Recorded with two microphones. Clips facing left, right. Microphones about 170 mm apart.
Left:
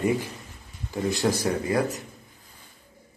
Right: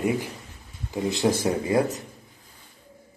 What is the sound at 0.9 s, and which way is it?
Speech, 20° right (ahead or behind).